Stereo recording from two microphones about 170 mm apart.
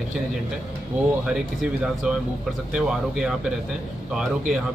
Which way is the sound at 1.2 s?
5° right (ahead or behind).